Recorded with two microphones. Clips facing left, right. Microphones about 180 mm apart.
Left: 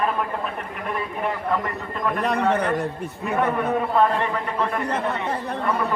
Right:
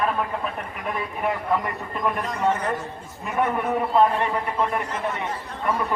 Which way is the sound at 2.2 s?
65° left (ahead or behind).